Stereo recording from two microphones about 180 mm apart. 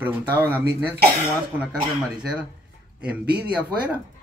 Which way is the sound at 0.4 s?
15° right (ahead or behind).